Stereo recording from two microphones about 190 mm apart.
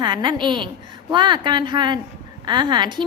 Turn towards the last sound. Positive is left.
turn(degrees=-25)  # may be behind; listen again after turning